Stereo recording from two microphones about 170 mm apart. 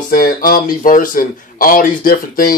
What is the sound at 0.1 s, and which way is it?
Speech, 55° left (ahead or behind).